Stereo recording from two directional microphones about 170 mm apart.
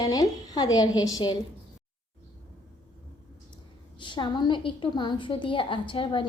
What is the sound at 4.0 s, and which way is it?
A woman's voice, 25° left (ahead or behind).